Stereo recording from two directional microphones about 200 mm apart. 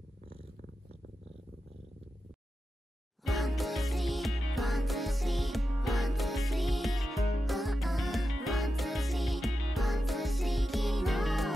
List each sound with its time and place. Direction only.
3.3 s music: centre (ahead or behind)